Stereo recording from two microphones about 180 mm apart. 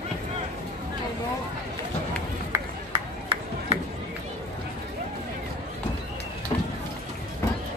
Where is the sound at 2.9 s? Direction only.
30° right (ahead or behind).